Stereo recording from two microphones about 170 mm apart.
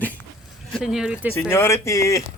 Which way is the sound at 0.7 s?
5° right (ahead or behind).